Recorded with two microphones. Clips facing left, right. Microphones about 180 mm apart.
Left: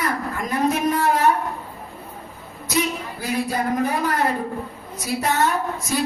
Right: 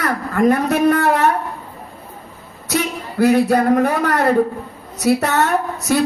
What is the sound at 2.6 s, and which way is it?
A man's voice, 70° right (ahead or behind).